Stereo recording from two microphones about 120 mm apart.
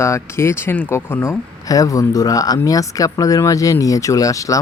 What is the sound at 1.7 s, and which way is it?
Speech, 30° left (ahead or behind).